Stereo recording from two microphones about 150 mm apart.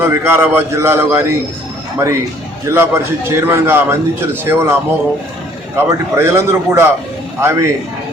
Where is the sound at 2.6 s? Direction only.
15° right (ahead or behind).